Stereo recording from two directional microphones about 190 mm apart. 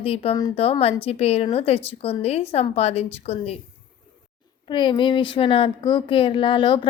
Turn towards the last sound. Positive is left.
turn(degrees=25)  # may be behind; listen again after turning